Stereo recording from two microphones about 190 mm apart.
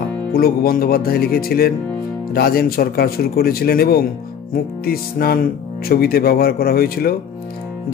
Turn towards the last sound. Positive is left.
turn(degrees=55)  # may be behind; listen again after turning